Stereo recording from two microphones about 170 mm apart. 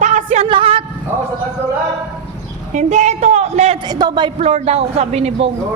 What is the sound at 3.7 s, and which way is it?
Speech, 25° right (ahead or behind).